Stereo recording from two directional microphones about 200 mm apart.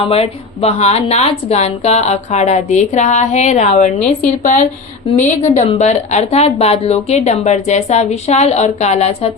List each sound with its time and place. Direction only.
0.0 s a woman's voice: 30° left (ahead or behind)